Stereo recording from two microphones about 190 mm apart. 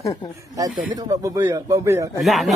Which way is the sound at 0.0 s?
20° left (ahead or behind).